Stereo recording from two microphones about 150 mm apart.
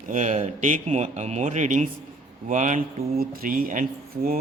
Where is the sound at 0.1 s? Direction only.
55° right (ahead or behind).